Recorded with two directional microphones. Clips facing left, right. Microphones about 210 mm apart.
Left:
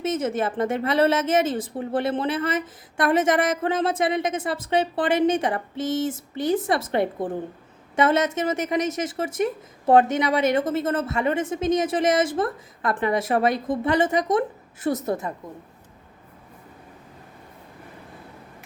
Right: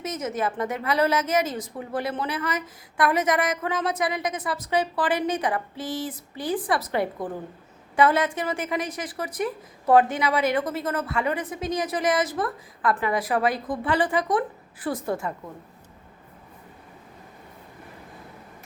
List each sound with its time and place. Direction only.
0.0 s a woman's voice: 30° left (ahead or behind)